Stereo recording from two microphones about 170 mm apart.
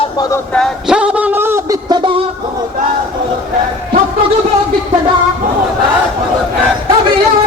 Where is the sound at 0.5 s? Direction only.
Centre (ahead or behind).